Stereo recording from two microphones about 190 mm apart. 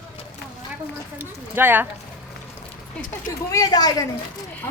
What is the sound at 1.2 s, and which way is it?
Speech, 10° right (ahead or behind).